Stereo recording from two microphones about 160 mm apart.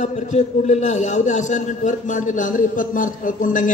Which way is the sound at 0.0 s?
45° left (ahead or behind).